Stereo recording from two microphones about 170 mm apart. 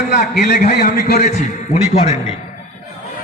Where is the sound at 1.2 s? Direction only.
40° left (ahead or behind).